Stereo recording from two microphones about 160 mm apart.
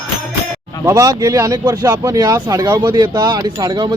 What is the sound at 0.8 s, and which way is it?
Speech, 20° right (ahead or behind).